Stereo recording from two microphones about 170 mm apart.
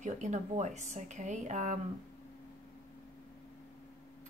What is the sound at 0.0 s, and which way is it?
A woman's voice, 45° right (ahead or behind).